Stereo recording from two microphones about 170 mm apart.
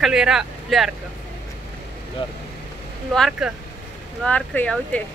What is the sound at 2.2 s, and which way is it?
Speech, 30° left (ahead or behind).